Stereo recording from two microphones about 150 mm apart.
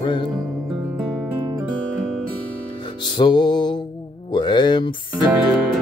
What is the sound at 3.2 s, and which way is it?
Music, 30° left (ahead or behind).